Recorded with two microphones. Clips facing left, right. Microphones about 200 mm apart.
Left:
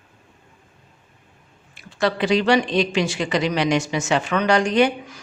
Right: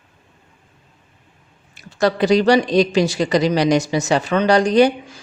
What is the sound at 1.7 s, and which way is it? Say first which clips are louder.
A woman's voice: right 4 dB; 40° right (ahead or behind).